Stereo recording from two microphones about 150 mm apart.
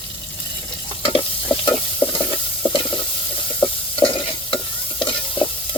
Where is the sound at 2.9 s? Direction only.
35° left (ahead or behind).